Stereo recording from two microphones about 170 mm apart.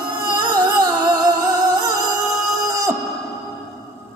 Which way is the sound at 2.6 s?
20° right (ahead or behind).